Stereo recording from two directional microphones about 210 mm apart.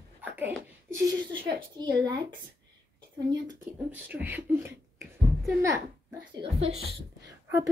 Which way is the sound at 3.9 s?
10° right (ahead or behind).